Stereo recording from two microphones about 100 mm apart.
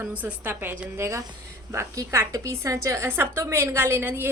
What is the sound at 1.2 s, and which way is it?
A woman's voice, 35° right (ahead or behind).